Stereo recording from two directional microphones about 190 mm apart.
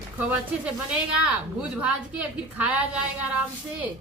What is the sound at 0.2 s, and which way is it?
A woman's voice, 10° right (ahead or behind).